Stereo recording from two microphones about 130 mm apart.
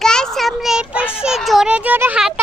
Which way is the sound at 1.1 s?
5° right (ahead or behind).